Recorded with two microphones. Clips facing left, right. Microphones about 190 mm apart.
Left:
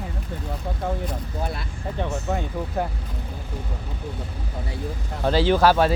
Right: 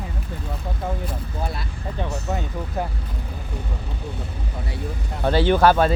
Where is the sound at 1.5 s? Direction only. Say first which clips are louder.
Even; 55° left (ahead or behind).